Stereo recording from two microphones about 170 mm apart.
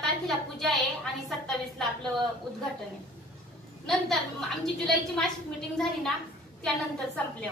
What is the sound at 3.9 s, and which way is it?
A woman's voice, centre (ahead or behind).